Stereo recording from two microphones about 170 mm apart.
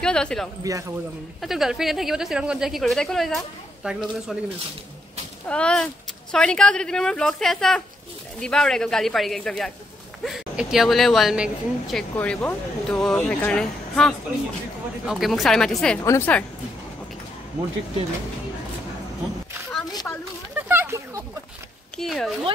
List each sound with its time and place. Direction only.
0.0 s speech: 5° left (ahead or behind)
0.7 s speech: 20° right (ahead or behind)
1.4 s speech: centre (ahead or behind)
5.5 s speech: 5° left (ahead or behind)
16.0 s a woman's voice: 15° left (ahead or behind)
19.9 s a sound: 25° left (ahead or behind)
20.6 s a sound: 15° right (ahead or behind)
21.9 s speech: centre (ahead or behind)